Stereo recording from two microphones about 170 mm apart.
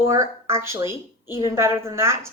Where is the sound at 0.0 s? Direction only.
15° right (ahead or behind).